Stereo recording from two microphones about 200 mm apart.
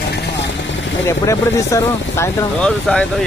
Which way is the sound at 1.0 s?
15° left (ahead or behind).